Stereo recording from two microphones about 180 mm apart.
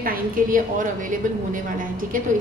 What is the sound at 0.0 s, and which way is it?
A woman's voice, 50° right (ahead or behind).